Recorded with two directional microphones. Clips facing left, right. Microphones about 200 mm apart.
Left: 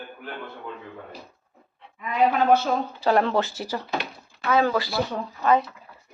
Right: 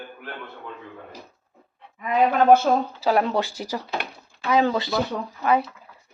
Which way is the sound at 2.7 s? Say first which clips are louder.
Right 4 dB; 45° right (ahead or behind).